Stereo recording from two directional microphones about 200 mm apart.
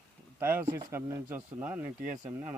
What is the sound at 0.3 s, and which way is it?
Speech, 10° right (ahead or behind).